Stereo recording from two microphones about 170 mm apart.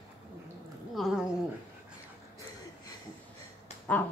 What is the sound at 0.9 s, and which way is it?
Dog, centre (ahead or behind).